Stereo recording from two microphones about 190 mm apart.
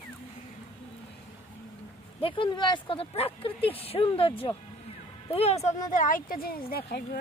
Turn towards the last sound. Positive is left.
turn(degrees=55)  # may be behind; listen again after turning